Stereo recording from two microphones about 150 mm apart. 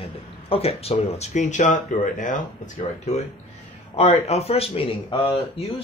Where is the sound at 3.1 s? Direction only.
50° left (ahead or behind).